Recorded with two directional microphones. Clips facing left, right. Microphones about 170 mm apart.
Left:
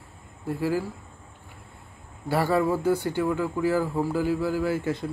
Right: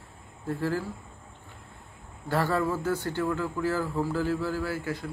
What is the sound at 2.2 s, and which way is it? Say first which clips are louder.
A man's voice: left 4 dB; 10° left (ahead or behind).